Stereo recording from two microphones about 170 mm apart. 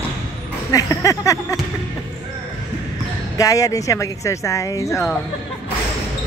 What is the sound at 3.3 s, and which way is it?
Speech, 20° left (ahead or behind).